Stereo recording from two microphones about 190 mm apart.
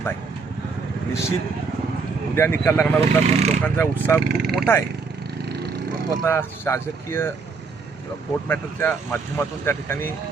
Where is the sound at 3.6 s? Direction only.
10° left (ahead or behind).